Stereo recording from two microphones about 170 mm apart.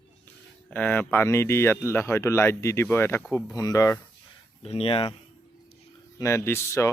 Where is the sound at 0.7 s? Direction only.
10° left (ahead or behind).